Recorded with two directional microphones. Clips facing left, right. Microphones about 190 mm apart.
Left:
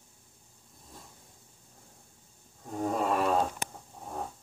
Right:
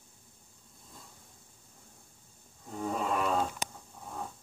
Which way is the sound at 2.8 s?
50° left (ahead or behind).